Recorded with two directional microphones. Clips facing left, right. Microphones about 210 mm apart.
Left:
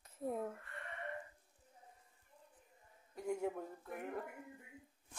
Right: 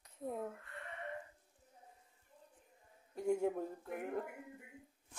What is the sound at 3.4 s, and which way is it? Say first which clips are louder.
Speech: right 4 dB; 30° right (ahead or behind).